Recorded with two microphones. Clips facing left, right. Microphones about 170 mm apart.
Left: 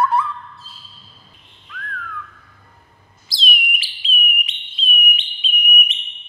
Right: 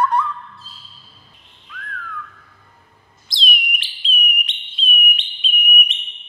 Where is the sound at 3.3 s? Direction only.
5° left (ahead or behind).